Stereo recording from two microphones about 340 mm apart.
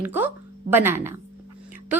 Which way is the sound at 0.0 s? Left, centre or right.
Centre.